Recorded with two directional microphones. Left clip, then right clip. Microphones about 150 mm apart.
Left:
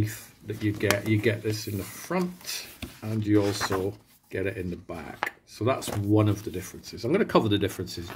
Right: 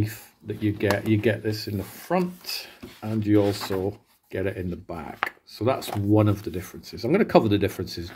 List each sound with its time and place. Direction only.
0.0 s speech: 30° right (ahead or behind)